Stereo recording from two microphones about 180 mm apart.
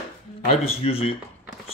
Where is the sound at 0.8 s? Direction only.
30° left (ahead or behind).